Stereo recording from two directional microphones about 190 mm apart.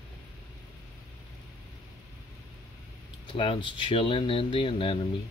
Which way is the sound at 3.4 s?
25° left (ahead or behind).